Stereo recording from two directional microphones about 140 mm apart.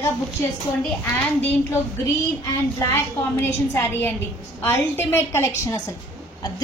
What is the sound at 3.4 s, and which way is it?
A woman's voice, 15° left (ahead or behind).